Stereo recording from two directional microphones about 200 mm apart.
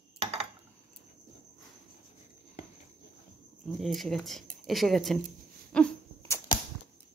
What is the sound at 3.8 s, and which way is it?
Speech, centre (ahead or behind).